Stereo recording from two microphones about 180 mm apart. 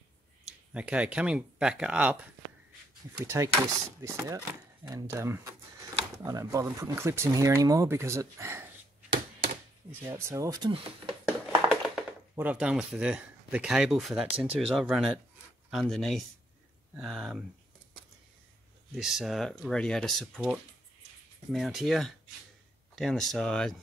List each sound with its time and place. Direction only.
0.5 s speech: 5° right (ahead or behind)
3.3 s speech: 15° right (ahead or behind)
10.0 s speech: 15° right (ahead or behind)
10.7 s speech: 30° right (ahead or behind)
11.2 s a sound: 5° right (ahead or behind)
12.4 s speech: 5° right (ahead or behind)
18.9 s speech: centre (ahead or behind)